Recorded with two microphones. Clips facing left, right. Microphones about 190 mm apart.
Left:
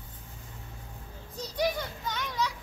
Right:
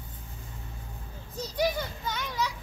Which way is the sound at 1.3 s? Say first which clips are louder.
Right 1 dB; 5° right (ahead or behind).